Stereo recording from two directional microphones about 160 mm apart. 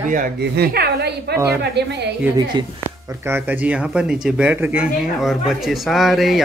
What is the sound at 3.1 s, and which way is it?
Speech, 15° right (ahead or behind).